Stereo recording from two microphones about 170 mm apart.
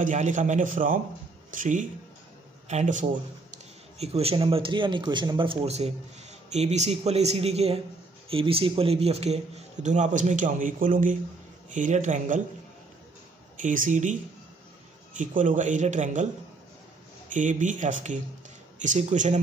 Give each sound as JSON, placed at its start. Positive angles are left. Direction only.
{"t": 0.0, "sound": "speech", "side_deg": -45}
{"t": 4.0, "sound": "a man's voice", "side_deg": -35}
{"t": 13.6, "sound": "speech", "side_deg": -50}
{"t": 15.1, "sound": "speech", "side_deg": -45}
{"t": 17.3, "sound": "speech", "side_deg": -50}